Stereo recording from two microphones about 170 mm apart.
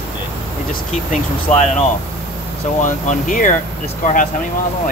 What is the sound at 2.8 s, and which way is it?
Speech, 50° left (ahead or behind).